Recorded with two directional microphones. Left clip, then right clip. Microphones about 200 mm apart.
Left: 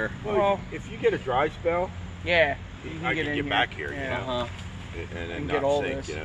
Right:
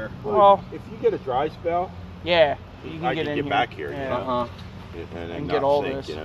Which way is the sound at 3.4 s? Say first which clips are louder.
Right 2 dB; 55° right (ahead or behind).